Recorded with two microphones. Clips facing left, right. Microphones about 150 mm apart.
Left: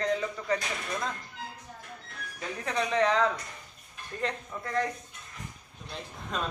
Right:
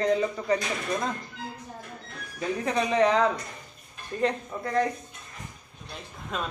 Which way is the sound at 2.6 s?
10° right (ahead or behind).